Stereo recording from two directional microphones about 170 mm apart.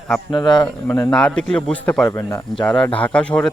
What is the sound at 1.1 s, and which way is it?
Speech, 5° left (ahead or behind).